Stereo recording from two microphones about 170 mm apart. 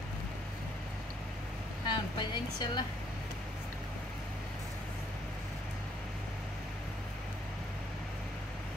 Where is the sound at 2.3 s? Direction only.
25° left (ahead or behind).